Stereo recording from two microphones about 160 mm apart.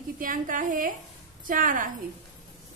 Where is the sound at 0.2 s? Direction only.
55° right (ahead or behind).